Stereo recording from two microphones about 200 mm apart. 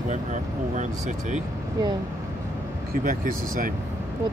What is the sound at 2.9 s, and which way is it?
Speech, 45° right (ahead or behind).